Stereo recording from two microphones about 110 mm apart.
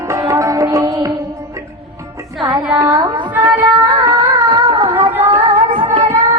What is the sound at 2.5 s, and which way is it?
Music, 30° right (ahead or behind).